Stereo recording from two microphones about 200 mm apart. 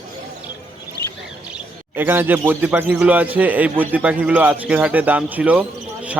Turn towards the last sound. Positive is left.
turn(degrees=-5)  # may be behind; listen again after turning